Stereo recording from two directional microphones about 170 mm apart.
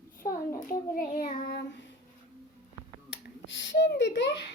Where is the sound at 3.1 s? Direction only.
90° left.